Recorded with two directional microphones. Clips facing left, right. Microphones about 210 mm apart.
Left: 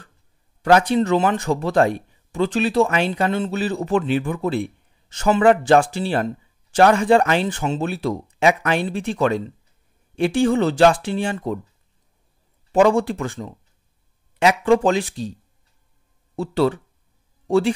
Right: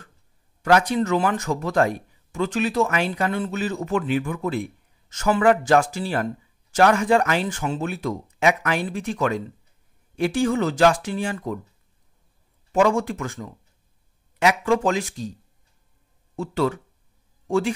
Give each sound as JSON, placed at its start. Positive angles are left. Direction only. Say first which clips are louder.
{"t": 0.6, "sound": "speech", "louder": "left 3 dB", "side_deg": 30}
{"t": 12.7, "sound": "speech", "louder": "left 4 dB", "side_deg": 35}
{"t": 16.3, "sound": "speech", "louder": "left 4 dB", "side_deg": 30}